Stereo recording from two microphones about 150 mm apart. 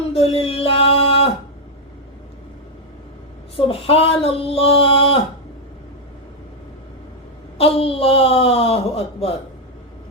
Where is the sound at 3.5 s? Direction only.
40° left (ahead or behind).